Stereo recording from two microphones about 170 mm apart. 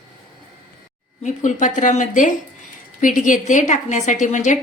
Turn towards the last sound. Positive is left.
turn(degrees=45)  # may be behind; listen again after turning